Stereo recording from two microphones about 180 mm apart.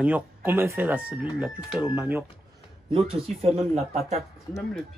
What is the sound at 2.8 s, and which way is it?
Speech, 30° right (ahead or behind).